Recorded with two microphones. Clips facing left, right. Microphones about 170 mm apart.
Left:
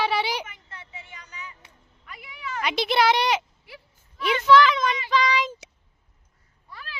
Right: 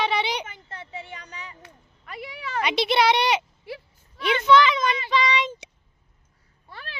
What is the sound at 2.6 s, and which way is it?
A woman's voice, centre (ahead or behind).